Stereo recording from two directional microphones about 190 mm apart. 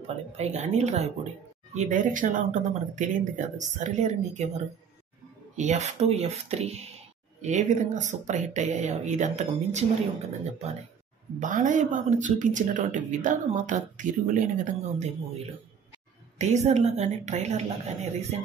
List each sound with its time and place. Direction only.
0.0 s speech: 35° right (ahead or behind)
11.3 s speech: 45° right (ahead or behind)
16.3 s speech: 35° right (ahead or behind)